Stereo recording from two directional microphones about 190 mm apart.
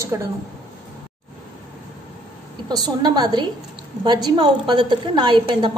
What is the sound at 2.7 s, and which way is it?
A woman's voice, 20° right (ahead or behind).